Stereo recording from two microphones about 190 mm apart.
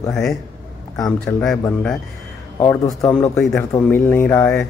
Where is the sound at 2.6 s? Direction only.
15° left (ahead or behind).